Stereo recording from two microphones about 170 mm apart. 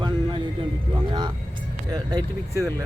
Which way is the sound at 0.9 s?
25° right (ahead or behind).